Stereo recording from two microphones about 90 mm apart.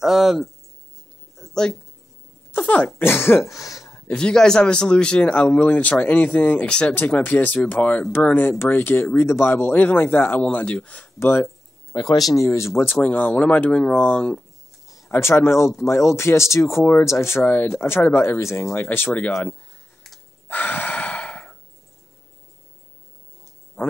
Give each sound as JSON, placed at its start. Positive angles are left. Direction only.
{"t": 0.0, "sound": "speech", "side_deg": -5}
{"t": 1.3, "sound": "a sound", "side_deg": 5}
{"t": 2.5, "sound": "speech", "side_deg": 15}
{"t": 3.5, "sound": "speech", "side_deg": 40}
{"t": 3.9, "sound": "speech", "side_deg": 10}
{"t": 11.1, "sound": "speech", "side_deg": 25}
{"t": 11.9, "sound": "speech", "side_deg": 45}
{"t": 12.4, "sound": "speech", "side_deg": 30}
{"t": 12.9, "sound": "speech", "side_deg": 15}
{"t": 15.0, "sound": "speech", "side_deg": 30}
{"t": 20.4, "sound": "gasp", "side_deg": 20}
{"t": 23.8, "sound": "frog", "side_deg": 15}